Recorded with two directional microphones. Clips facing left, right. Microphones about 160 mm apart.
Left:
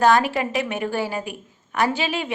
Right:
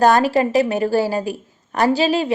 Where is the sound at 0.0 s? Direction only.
40° right (ahead or behind).